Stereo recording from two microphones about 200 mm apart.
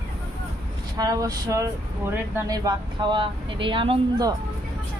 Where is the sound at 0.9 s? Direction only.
15° right (ahead or behind).